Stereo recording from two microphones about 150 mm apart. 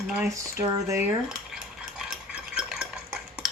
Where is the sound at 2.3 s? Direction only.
5° right (ahead or behind).